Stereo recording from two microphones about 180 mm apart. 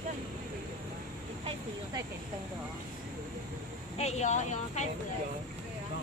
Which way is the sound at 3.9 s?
35° left (ahead or behind).